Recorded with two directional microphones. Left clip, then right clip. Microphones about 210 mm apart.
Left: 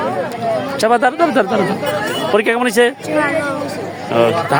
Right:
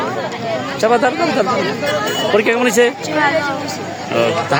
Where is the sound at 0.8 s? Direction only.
40° left (ahead or behind).